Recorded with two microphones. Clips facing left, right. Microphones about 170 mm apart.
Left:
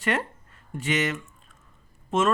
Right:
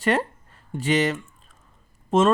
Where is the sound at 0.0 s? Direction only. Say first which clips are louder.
Right 5 dB; 35° right (ahead or behind).